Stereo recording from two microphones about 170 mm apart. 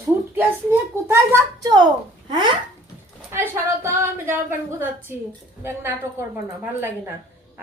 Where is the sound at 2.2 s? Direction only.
30° right (ahead or behind).